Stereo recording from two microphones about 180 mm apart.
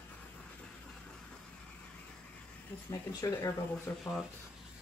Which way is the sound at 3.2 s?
15° left (ahead or behind).